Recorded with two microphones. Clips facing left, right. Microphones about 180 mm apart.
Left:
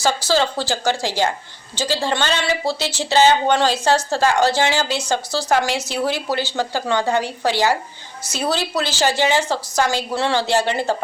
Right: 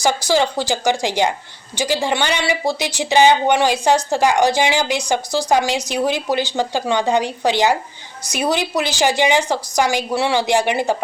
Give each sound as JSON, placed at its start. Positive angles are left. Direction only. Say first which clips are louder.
{"t": 0.0, "sound": "a woman's voice", "louder": "right 2 dB", "side_deg": -15}